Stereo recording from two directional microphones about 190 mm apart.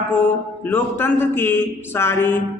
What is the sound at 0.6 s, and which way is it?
Speech, 10° left (ahead or behind).